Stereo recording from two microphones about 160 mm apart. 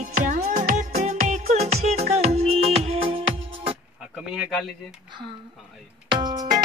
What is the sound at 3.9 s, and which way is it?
Speech, 5° right (ahead or behind).